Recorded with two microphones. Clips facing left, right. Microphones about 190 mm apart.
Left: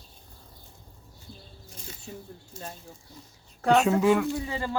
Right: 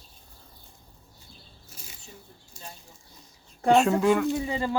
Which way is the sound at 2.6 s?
10° right (ahead or behind).